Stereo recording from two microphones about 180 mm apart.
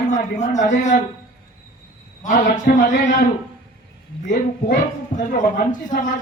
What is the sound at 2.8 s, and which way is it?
Speech, 45° left (ahead or behind).